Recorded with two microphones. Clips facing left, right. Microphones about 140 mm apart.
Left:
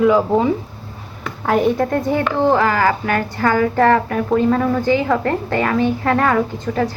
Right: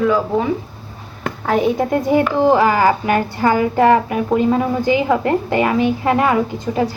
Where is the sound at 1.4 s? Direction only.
Centre (ahead or behind).